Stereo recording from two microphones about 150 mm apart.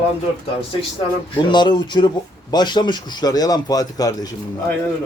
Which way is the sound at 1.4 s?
30° left (ahead or behind).